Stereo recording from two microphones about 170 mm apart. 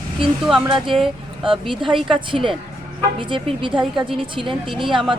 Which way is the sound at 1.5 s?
30° right (ahead or behind).